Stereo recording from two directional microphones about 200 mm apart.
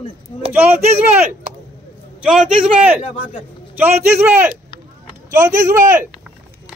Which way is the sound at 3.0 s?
25° left (ahead or behind).